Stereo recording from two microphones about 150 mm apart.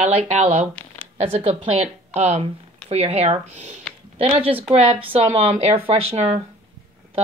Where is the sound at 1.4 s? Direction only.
40° right (ahead or behind).